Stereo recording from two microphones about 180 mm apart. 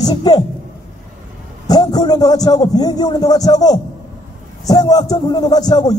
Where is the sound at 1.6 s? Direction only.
20° left (ahead or behind).